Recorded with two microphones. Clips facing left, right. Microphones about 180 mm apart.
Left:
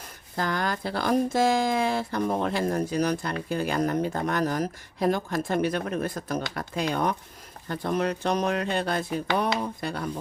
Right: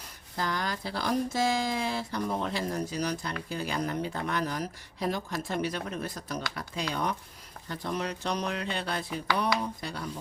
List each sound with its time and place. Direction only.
0.3 s speech: 55° left (ahead or behind)